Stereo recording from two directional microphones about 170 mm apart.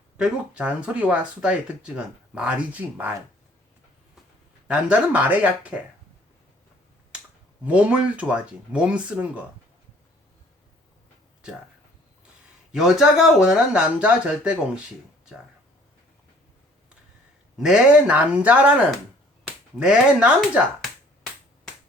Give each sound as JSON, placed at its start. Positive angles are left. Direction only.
{"t": 0.2, "sound": "speech", "side_deg": -5}
{"t": 4.7, "sound": "speech", "side_deg": -10}
{"t": 7.6, "sound": "speech", "side_deg": -10}
{"t": 12.7, "sound": "speech", "side_deg": -5}
{"t": 17.6, "sound": "speech", "side_deg": -5}
{"t": 19.8, "sound": "speech", "side_deg": -5}